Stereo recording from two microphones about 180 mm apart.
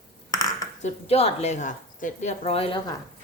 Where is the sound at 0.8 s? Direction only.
35° left (ahead or behind).